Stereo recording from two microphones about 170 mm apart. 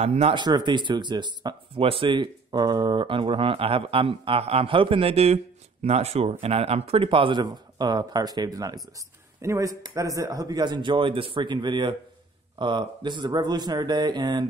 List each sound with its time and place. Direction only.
0.0 s speech: 40° right (ahead or behind)
0.4 s speech: 25° right (ahead or behind)